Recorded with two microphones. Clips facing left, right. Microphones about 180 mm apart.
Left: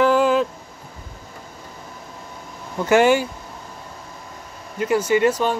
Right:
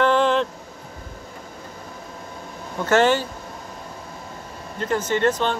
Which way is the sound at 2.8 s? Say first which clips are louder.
Left 3 dB; 10° left (ahead or behind).